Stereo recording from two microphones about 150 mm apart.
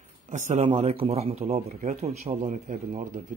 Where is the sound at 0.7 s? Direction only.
40° right (ahead or behind).